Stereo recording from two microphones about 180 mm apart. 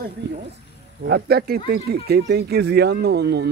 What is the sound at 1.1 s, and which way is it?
Speech, 60° right (ahead or behind).